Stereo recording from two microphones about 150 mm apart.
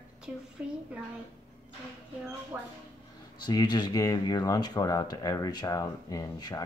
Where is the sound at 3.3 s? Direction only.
30° left (ahead or behind).